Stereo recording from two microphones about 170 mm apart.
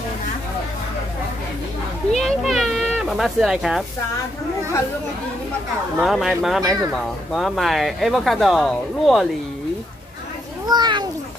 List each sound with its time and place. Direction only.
2.1 s a sound: centre (ahead or behind)
5.9 s speech: centre (ahead or behind)
10.7 s a child's voice: 25° right (ahead or behind)